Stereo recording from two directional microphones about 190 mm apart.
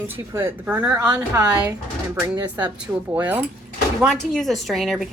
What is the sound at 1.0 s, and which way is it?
A woman's voice, 20° right (ahead or behind).